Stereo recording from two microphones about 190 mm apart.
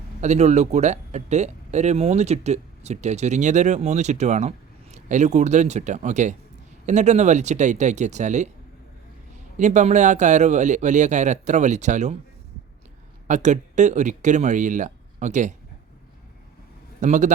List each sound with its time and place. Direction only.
0.2 s speech: 35° right (ahead or behind)
9.6 s speech: 40° right (ahead or behind)
13.2 s speech: 40° right (ahead or behind)
17.0 s speech: 40° right (ahead or behind)